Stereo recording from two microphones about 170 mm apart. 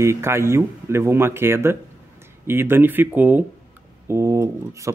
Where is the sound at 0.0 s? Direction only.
15° right (ahead or behind).